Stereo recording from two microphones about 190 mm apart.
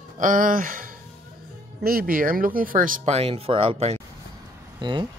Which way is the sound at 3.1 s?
30° right (ahead or behind).